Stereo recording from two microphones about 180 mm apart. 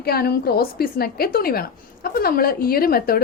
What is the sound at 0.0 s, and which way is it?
A woman's voice, 60° left (ahead or behind).